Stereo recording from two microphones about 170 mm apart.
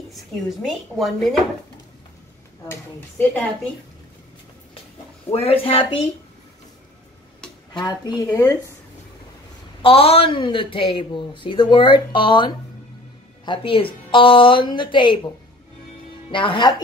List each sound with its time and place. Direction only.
0.1 s speech: centre (ahead or behind)
2.7 s speech: 10° left (ahead or behind)
5.4 s speech: 35° left (ahead or behind)
7.7 s speech: 25° left (ahead or behind)
9.8 s speech: 35° left (ahead or behind)
16.3 s speech: 30° left (ahead or behind)